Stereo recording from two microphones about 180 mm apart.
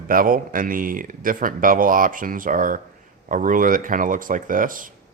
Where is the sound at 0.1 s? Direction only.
50° right (ahead or behind).